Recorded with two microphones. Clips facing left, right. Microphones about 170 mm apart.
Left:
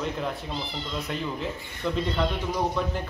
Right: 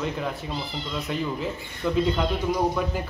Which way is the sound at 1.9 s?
5° right (ahead or behind).